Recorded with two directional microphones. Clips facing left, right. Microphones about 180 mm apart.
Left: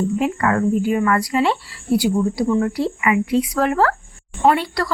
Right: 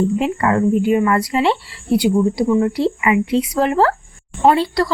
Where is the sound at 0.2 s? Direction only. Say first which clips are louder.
Right 2 dB; 25° right (ahead or behind).